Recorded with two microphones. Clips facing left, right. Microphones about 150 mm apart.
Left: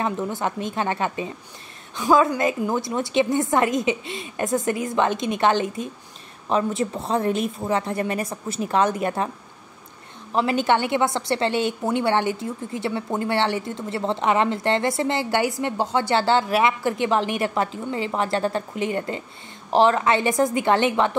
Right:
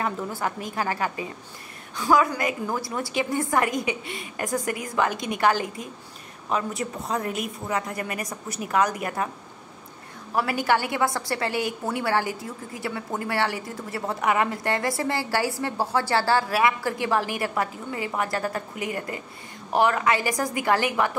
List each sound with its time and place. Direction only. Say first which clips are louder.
0.0 s a woman's voice: left 3 dB; 20° left (ahead or behind)
10.3 s a woman's voice: left 3 dB; 25° left (ahead or behind)